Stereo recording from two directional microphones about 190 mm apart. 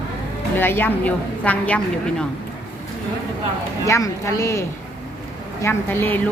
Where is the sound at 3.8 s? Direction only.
15° left (ahead or behind).